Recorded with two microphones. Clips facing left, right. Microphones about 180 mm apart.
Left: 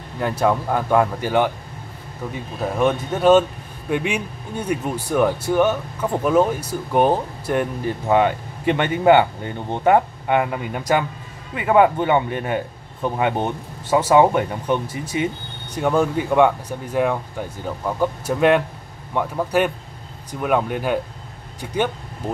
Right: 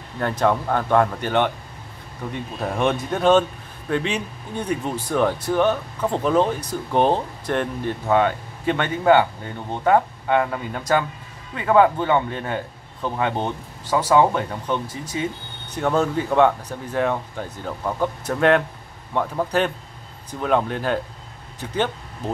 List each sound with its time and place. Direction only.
0.2 s speech: 10° left (ahead or behind)